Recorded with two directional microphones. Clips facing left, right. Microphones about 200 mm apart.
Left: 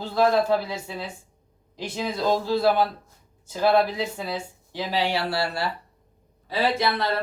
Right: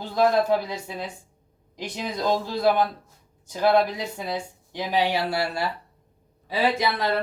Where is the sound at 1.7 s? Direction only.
15° right (ahead or behind).